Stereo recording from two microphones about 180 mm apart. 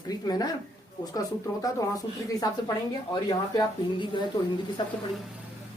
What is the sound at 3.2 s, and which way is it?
Speech, 20° left (ahead or behind).